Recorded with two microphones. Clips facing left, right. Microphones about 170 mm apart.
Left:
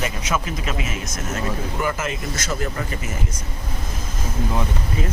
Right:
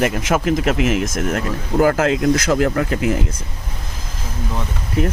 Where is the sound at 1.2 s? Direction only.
80° right.